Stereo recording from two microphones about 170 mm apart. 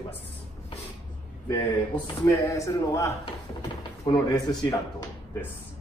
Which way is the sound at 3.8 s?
25° left (ahead or behind).